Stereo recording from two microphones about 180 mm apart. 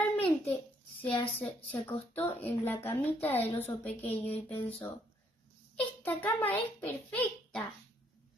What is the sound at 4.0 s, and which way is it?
Speech, 35° left (ahead or behind).